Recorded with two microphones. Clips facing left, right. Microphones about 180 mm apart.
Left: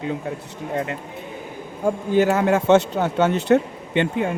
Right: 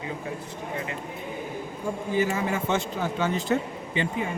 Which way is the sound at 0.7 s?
55° left (ahead or behind).